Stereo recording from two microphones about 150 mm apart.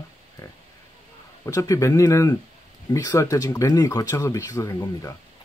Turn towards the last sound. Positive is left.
turn(degrees=20)  # may be behind; listen again after turning